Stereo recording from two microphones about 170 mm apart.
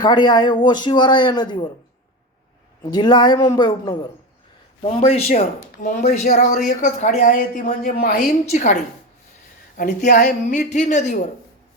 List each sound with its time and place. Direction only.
0.0 s speech: 25° left (ahead or behind)
2.9 s speech: 25° left (ahead or behind)
4.8 s speech: 35° left (ahead or behind); by 8.1 s 55° left (ahead or behind)
8.4 s speech: 45° left (ahead or behind)